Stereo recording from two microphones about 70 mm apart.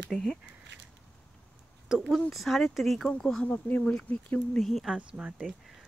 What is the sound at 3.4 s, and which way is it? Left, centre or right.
Speech, left.